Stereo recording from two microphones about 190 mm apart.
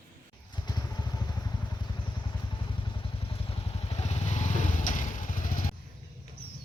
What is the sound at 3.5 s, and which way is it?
Motorcycle, 35° left (ahead or behind).